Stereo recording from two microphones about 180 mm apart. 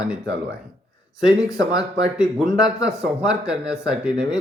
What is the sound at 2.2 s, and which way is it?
A man's voice, centre (ahead or behind).